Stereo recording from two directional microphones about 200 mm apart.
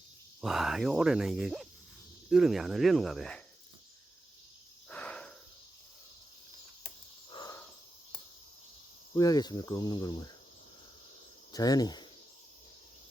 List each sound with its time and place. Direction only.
0.4 s speech: centre (ahead or behind)
4.9 s cricket: 5° left (ahead or behind)
7.3 s wild animals: 25° left (ahead or behind)
9.1 s cricket: 20° left (ahead or behind)
11.5 s cricket: 20° left (ahead or behind)